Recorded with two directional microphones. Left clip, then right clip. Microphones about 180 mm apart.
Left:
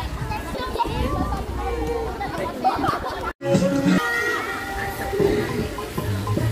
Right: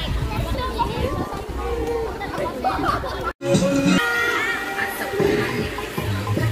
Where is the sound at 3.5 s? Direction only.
35° right (ahead or behind).